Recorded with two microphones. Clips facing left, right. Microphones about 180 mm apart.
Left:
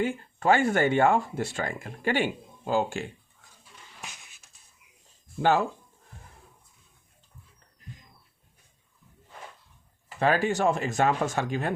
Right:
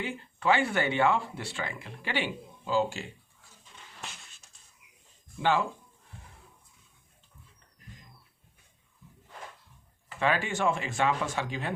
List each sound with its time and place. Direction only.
0.0 s speech: 45° left (ahead or behind)
4.0 s a sound: 15° left (ahead or behind)
5.4 s speech: 45° left (ahead or behind)
10.2 s speech: 40° left (ahead or behind)